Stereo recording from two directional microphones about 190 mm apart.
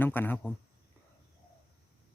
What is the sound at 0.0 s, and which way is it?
Speech, 10° left (ahead or behind).